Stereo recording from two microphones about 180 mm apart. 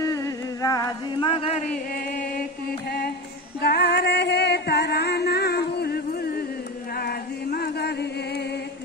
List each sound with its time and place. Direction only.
0.0 s a sound: 15° left (ahead or behind)
2.0 s chant: 50° left (ahead or behind)
3.6 s music: 65° left (ahead or behind)